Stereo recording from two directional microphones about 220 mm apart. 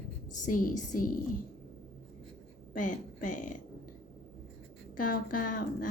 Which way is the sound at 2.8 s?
35° left (ahead or behind).